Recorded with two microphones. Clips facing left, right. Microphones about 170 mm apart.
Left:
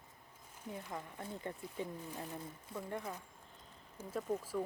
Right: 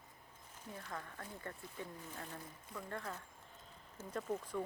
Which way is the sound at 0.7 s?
15° left (ahead or behind).